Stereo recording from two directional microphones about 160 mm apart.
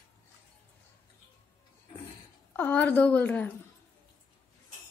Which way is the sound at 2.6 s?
10° left (ahead or behind).